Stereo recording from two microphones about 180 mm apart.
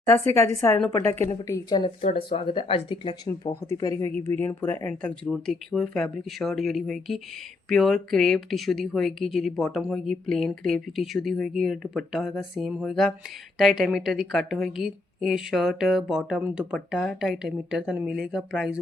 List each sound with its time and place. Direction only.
0.3 s a woman's voice: 15° left (ahead or behind)
2.0 s speech: 35° left (ahead or behind); by 18.8 s 5° right (ahead or behind)